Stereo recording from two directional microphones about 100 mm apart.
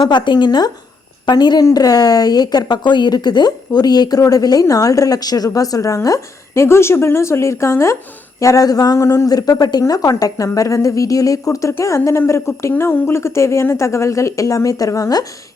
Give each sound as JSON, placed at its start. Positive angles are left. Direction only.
{"t": 0.0, "sound": "a woman's voice", "side_deg": 50}